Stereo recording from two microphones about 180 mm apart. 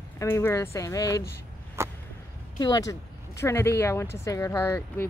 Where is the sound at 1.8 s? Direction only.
15° right (ahead or behind).